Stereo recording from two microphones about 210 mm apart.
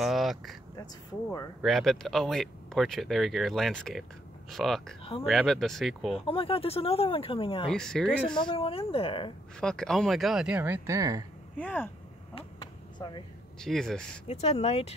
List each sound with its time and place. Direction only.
0.0 s speech: centre (ahead or behind)
1.6 s speech: centre (ahead or behind)
6.2 s speech: 25° left (ahead or behind)
7.7 s speech: 5° left (ahead or behind)
8.4 s speech: 25° left (ahead or behind)
9.6 s speech: 5° left (ahead or behind); by 11.2 s 15° right (ahead or behind)
11.5 s speech: 10° left (ahead or behind)
13.6 s speech: centre (ahead or behind)
14.2 s speech: 30° left (ahead or behind)